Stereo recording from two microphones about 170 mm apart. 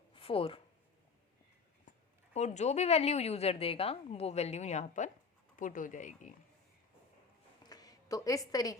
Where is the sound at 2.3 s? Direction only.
40° left (ahead or behind).